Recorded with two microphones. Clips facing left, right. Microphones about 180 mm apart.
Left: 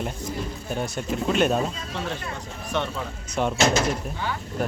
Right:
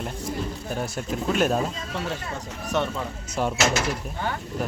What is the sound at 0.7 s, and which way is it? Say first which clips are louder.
Speech: left 3 dB; centre (ahead or behind).